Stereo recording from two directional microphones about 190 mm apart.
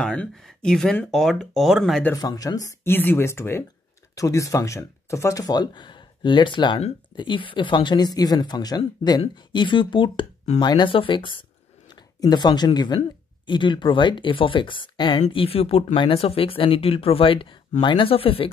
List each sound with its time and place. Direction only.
0.0 s speech: 5° left (ahead or behind)
2.1 s speech: 20° left (ahead or behind)